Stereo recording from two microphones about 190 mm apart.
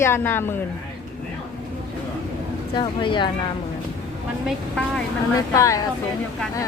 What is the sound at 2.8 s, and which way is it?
Speech, 25° left (ahead or behind).